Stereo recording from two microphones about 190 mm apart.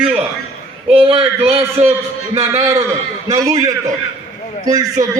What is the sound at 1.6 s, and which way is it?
A man's voice, 15° right (ahead or behind).